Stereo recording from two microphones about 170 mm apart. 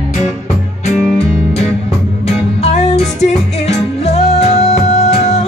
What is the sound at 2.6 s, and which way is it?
Music, 40° left (ahead or behind).